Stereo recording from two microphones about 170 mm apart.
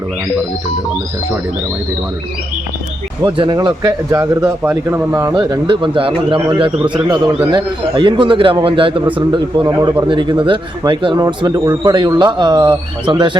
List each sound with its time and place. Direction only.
3.2 s a man's voice: 30° right (ahead or behind)